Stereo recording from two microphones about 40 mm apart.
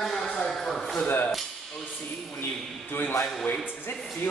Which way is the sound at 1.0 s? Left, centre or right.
Left.